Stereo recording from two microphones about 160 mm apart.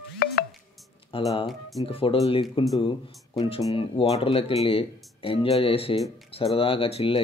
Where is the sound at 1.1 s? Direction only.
35° left (ahead or behind).